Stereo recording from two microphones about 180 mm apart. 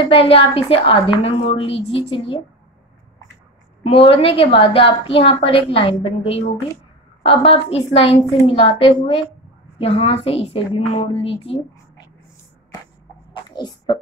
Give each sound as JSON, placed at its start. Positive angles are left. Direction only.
{"t": 0.1, "sound": "a woman's voice", "side_deg": 30}
{"t": 3.8, "sound": "a woman's voice", "side_deg": 35}
{"t": 13.3, "sound": "a sound", "side_deg": 25}